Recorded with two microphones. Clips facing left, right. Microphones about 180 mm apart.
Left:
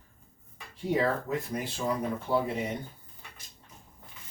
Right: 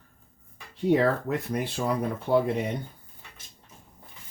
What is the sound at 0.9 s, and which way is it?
Speech, 65° right (ahead or behind).